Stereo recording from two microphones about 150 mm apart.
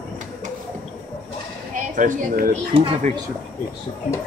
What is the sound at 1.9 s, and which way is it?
Speech, 60° right (ahead or behind).